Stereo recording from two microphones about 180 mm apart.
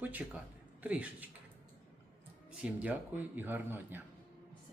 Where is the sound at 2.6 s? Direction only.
10° right (ahead or behind).